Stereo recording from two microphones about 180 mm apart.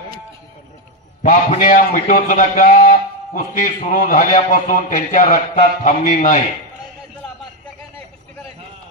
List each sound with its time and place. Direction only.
1.2 s a man's voice: 45° left (ahead or behind)